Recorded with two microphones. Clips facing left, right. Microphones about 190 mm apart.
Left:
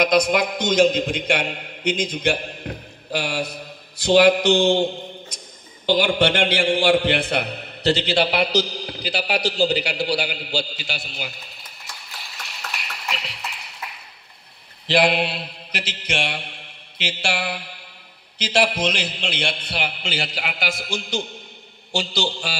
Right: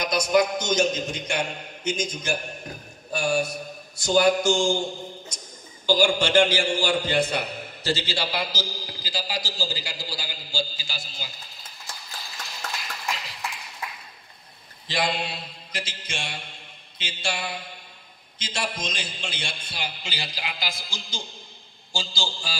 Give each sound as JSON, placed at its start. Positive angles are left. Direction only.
{"t": 0.8, "sound": "a man's voice", "side_deg": 60}
{"t": 14.9, "sound": "mantra", "side_deg": 70}
{"t": 18.4, "sound": "a man's voice", "side_deg": 70}